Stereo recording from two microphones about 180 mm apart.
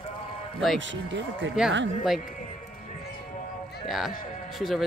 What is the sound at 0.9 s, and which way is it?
Speech, 90° right.